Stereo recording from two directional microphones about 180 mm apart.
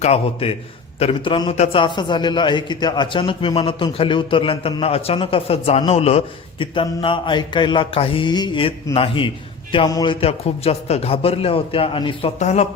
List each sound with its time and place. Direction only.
0.0 s a man's voice: 35° left (ahead or behind)